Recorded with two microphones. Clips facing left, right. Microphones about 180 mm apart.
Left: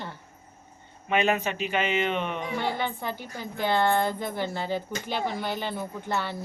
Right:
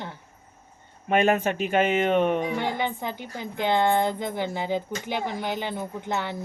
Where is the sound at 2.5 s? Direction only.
15° right (ahead or behind).